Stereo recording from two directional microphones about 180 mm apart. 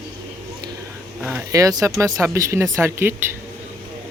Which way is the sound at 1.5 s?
20° right (ahead or behind).